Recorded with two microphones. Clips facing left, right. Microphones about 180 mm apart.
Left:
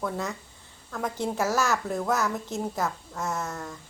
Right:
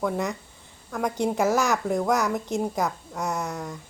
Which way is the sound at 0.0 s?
15° right (ahead or behind).